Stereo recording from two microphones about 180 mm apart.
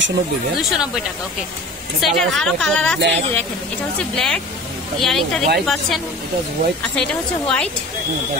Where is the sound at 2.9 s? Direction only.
75° right (ahead or behind).